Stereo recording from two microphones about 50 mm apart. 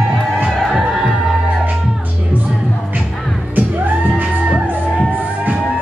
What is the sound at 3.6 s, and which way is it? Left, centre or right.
Music, right.